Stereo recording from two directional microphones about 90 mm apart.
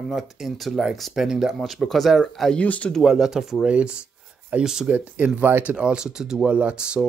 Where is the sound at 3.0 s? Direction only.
5° right (ahead or behind).